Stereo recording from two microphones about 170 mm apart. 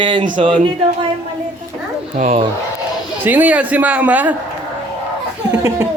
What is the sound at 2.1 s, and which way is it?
Speech, 40° right (ahead or behind).